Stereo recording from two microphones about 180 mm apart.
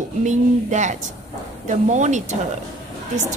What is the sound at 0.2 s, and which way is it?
A woman's voice, 40° right (ahead or behind).